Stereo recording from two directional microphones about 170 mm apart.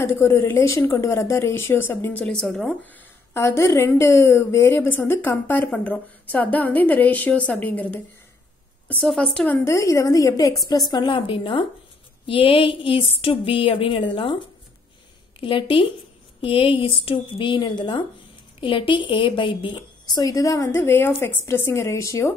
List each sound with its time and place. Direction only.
0.0 s a woman's voice: 15° left (ahead or behind)
3.3 s a woman's voice: 15° left (ahead or behind); by 14.0 s 30° left (ahead or behind)
16.3 s a woman's voice: 30° left (ahead or behind)